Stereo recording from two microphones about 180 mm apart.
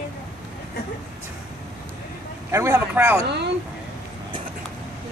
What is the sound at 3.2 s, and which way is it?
Speech, 70° right (ahead or behind).